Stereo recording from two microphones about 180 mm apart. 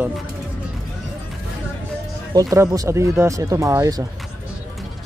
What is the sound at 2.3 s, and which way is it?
Speech, 20° right (ahead or behind).